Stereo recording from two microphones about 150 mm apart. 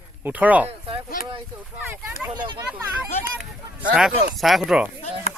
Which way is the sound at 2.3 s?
30° right (ahead or behind).